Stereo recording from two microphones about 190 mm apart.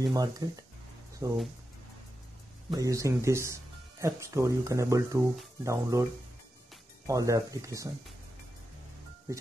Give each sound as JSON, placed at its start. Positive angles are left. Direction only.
{"t": 0.0, "sound": "speech", "side_deg": -20}
{"t": 2.7, "sound": "speech", "side_deg": -15}
{"t": 7.1, "sound": "speech", "side_deg": -15}